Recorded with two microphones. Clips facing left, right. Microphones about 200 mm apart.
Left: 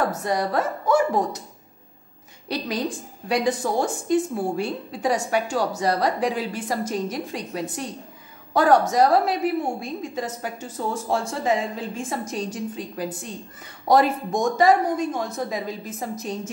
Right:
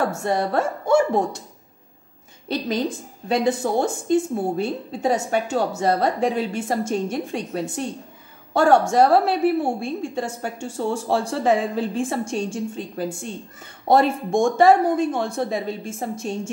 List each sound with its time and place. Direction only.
0.0 s a woman's voice: 25° right (ahead or behind)
2.4 s a woman's voice: 25° right (ahead or behind)
11.3 s speech: 60° right (ahead or behind)
11.9 s a woman's voice: 30° right (ahead or behind)
13.8 s a woman's voice: 25° right (ahead or behind)